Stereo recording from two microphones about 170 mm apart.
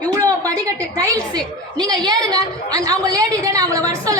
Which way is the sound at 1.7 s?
25° right (ahead or behind).